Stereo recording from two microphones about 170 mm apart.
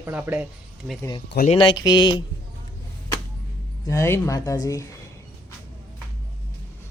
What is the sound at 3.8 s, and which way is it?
Speech, 15° left (ahead or behind).